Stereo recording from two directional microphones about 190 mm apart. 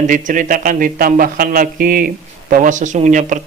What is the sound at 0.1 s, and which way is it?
A man's voice, 45° right (ahead or behind).